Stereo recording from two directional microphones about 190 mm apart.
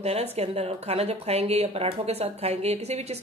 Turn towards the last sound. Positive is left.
turn(degrees=-35)  # may be behind; listen again after turning